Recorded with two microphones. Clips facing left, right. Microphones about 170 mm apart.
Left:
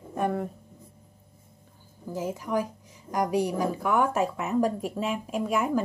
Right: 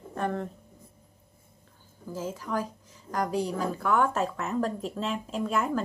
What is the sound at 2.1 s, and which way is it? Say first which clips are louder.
A woman's voice: left 3 dB; 15° left (ahead or behind).